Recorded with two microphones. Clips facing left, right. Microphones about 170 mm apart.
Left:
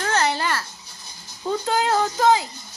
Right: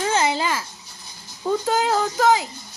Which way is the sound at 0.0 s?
10° right (ahead or behind).